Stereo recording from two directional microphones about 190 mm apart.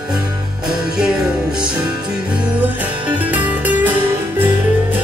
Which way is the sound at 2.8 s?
10° right (ahead or behind).